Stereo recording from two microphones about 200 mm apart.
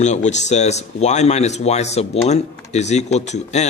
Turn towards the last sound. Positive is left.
turn(degrees=35)  # may be behind; listen again after turning